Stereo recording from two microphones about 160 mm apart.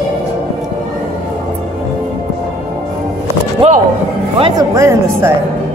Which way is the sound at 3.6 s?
40° right (ahead or behind).